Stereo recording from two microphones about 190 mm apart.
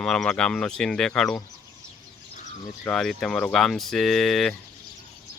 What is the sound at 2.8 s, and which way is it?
Speech, 5° left (ahead or behind).